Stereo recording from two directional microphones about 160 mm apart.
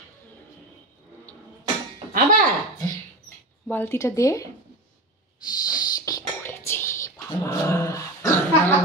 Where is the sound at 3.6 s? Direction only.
10° left (ahead or behind).